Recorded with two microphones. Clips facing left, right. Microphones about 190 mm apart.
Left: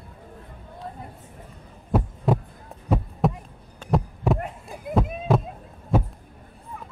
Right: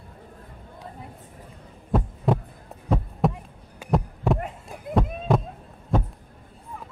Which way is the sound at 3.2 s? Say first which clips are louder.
Even; centre (ahead or behind).